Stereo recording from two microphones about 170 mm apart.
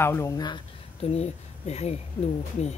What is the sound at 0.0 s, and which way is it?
Speech, 15° left (ahead or behind).